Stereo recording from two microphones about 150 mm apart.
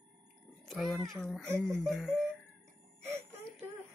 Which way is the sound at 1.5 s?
20° right (ahead or behind).